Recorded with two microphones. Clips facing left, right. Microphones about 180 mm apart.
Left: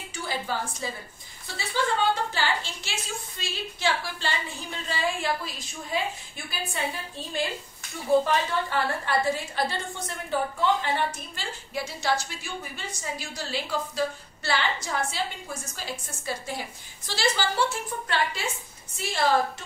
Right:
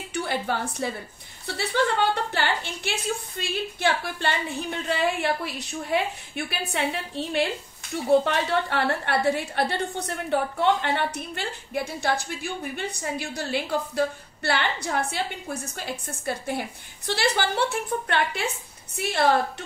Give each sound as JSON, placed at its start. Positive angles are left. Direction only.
{"t": 0.1, "sound": "a woman's voice", "side_deg": -60}